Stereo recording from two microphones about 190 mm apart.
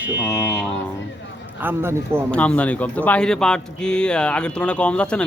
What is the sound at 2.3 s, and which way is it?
Speech, 5° left (ahead or behind).